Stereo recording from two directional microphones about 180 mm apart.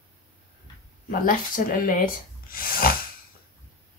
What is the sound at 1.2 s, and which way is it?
Speech, 50° left (ahead or behind).